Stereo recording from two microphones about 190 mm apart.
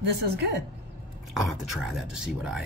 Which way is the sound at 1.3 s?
Centre (ahead or behind).